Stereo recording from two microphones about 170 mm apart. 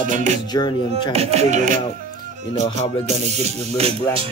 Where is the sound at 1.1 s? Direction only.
35° right (ahead or behind).